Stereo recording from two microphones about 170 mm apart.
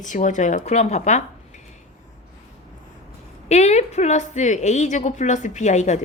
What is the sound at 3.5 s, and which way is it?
A woman's voice, 40° left (ahead or behind).